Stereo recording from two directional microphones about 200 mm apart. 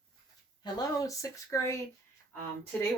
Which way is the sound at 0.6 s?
20° left (ahead or behind).